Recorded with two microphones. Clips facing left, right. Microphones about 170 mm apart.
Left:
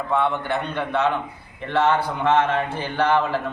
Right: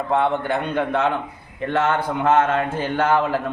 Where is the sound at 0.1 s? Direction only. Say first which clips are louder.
Right 2 dB; 50° right (ahead or behind).